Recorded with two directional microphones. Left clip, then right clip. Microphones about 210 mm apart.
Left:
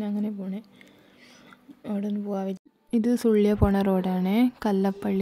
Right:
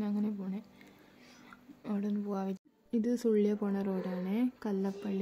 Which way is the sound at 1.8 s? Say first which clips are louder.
Left 6 dB; 20° left (ahead or behind).